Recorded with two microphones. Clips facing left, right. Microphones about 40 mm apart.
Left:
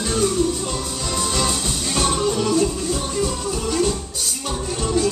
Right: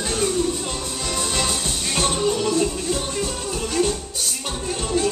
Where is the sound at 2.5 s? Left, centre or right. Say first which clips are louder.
Left 2 dB; right.